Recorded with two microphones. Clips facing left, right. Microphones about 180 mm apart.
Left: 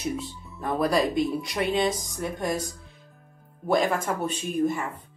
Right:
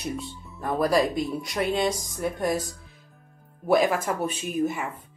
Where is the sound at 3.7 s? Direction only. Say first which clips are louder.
Right 2 dB; 10° right (ahead or behind).